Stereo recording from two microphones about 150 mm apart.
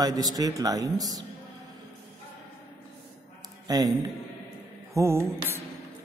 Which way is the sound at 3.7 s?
25° right (ahead or behind).